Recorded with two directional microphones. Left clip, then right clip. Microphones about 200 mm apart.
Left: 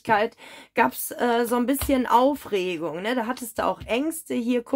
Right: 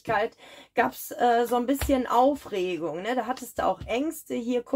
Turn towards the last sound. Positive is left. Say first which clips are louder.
# left 3 dB
turn(degrees=40)  # may be behind; listen again after turning